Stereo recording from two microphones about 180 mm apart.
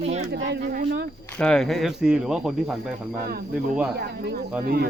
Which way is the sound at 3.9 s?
65° right (ahead or behind).